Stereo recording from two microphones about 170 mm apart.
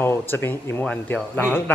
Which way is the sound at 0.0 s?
15° left (ahead or behind).